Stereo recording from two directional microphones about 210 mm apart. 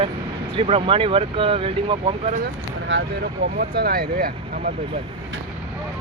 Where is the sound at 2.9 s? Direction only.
55° right (ahead or behind).